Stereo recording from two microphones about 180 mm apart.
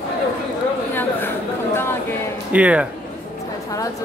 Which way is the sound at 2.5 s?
5° right (ahead or behind).